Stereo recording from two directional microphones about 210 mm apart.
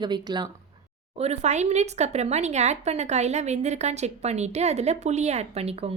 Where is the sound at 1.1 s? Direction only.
30° right (ahead or behind).